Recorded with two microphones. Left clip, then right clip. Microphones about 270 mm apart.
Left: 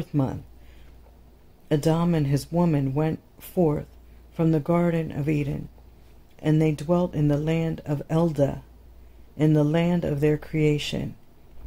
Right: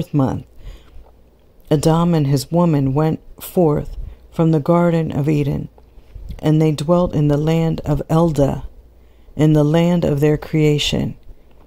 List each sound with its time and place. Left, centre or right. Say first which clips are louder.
0.0 s speech: right 8 dB; right
1.7 s speech: right 8 dB; right